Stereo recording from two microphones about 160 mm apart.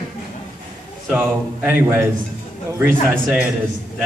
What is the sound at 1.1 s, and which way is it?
A man's voice, 10° right (ahead or behind).